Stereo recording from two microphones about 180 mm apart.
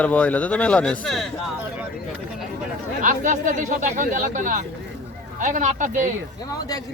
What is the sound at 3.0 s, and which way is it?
Speech, 45° right (ahead or behind).